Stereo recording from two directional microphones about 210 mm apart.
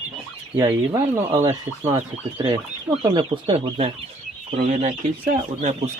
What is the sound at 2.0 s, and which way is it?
Speech, 25° right (ahead or behind).